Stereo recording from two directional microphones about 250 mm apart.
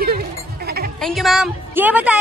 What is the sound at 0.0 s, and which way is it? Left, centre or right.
Sheep, right.